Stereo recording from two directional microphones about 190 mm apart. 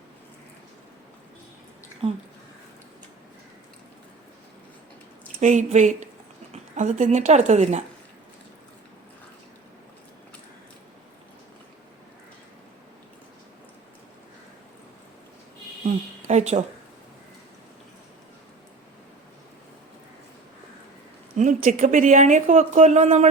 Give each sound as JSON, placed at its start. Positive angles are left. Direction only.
{"t": 2.0, "sound": "speech", "side_deg": -30}
{"t": 5.4, "sound": "speech", "side_deg": -40}
{"t": 16.2, "sound": "a sound", "side_deg": -35}
{"t": 21.3, "sound": "speech", "side_deg": -40}